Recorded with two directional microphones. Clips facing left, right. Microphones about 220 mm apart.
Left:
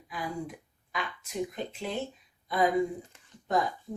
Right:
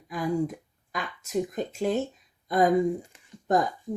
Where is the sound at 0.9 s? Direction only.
45° right (ahead or behind).